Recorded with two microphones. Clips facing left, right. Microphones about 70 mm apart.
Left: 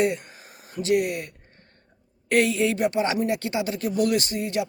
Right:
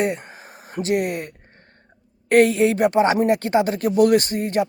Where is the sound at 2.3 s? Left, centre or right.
Right.